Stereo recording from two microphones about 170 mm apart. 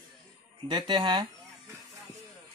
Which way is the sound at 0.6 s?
25° right (ahead or behind).